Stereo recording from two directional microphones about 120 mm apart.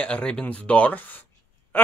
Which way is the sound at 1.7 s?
15° left (ahead or behind).